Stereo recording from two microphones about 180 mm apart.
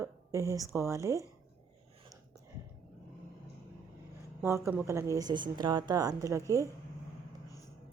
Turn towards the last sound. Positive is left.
turn(degrees=-15)  # may be behind; listen again after turning